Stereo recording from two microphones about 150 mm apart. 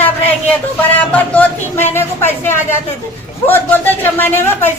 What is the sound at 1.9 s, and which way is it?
Speech, 15° left (ahead or behind).